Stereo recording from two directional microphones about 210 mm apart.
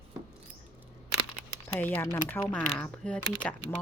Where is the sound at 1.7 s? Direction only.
10° left (ahead or behind).